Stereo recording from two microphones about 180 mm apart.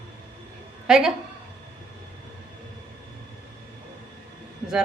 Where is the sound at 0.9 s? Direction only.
5° right (ahead or behind).